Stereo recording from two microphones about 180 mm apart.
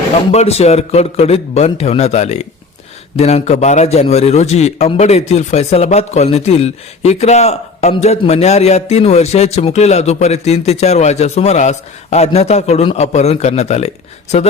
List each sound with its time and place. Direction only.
0.3 s a man's voice: 35° left (ahead or behind)